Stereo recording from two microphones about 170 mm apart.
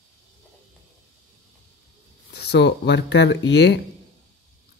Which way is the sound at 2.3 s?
75° left (ahead or behind).